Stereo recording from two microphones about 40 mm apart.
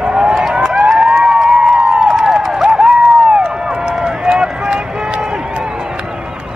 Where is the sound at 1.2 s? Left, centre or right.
Centre.